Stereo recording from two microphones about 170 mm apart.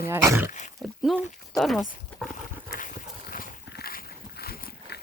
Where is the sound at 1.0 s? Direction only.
Centre (ahead or behind).